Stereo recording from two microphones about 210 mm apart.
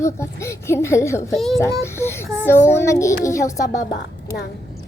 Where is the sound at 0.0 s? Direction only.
15° left (ahead or behind).